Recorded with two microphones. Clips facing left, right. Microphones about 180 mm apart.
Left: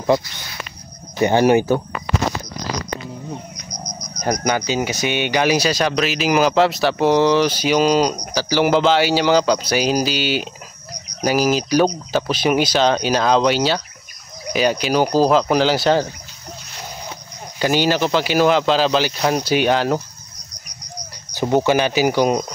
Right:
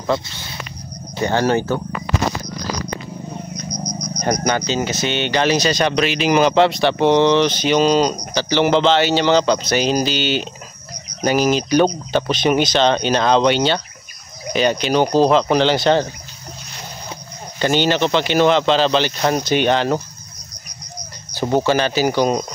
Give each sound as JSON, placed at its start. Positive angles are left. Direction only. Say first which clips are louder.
{"t": 0.1, "sound": "speech", "louder": "left 3 dB", "side_deg": -25}
{"t": 1.2, "sound": "speech", "louder": "left 3 dB", "side_deg": 15}
{"t": 4.2, "sound": "speech", "louder": "even", "side_deg": 5}
{"t": 17.6, "sound": "speech", "louder": "right 1 dB", "side_deg": 5}
{"t": 21.3, "sound": "speech", "louder": "left 1 dB", "side_deg": 15}